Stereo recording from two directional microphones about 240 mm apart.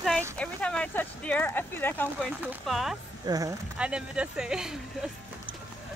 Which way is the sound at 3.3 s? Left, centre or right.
Centre.